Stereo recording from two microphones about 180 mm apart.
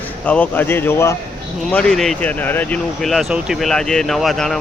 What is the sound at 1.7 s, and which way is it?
Speech, centre (ahead or behind).